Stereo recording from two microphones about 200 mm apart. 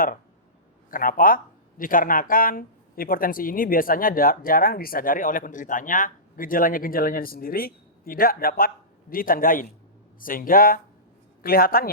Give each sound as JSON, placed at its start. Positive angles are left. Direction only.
{"t": 0.9, "sound": "speech", "side_deg": 45}